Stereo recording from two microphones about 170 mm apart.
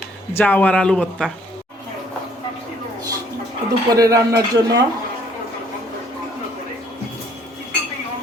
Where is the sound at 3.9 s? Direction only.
20° right (ahead or behind).